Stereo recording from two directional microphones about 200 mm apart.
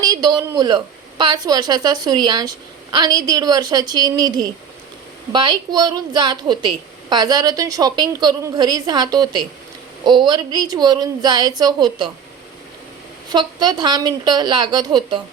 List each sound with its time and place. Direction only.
0.0 s a woman's voice: 20° right (ahead or behind)
13.3 s a woman's voice: 20° right (ahead or behind)